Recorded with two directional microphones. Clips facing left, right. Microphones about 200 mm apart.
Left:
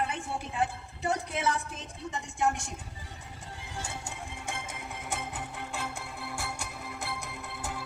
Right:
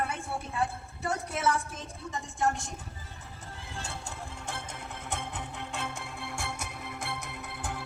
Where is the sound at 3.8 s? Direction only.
10° left (ahead or behind).